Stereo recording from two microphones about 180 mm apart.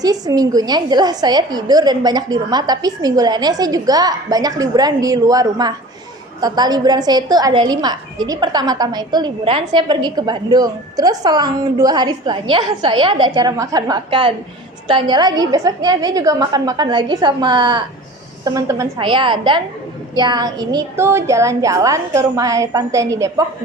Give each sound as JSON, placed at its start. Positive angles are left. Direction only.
{"t": 0.0, "sound": "a woman's voice", "side_deg": -20}